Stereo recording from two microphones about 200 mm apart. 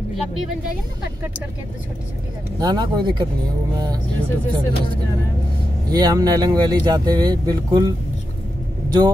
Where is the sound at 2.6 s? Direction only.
20° right (ahead or behind).